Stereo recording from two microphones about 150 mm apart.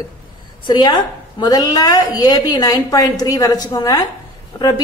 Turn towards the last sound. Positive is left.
turn(degrees=25)  # may be behind; listen again after turning